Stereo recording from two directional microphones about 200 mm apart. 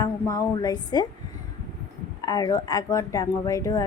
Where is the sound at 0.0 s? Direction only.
15° left (ahead or behind).